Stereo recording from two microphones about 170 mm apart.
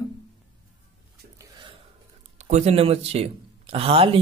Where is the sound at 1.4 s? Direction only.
25° right (ahead or behind).